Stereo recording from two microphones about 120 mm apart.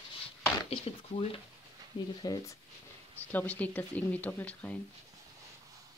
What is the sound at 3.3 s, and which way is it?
Speech, 15° left (ahead or behind).